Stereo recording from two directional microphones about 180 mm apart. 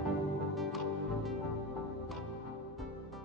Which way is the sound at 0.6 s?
Centre (ahead or behind).